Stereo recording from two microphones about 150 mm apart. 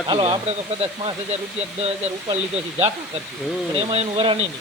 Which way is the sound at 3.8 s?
40° right (ahead or behind).